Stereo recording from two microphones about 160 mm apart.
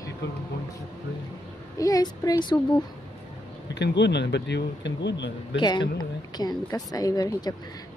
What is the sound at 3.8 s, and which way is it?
Speech, 90° left.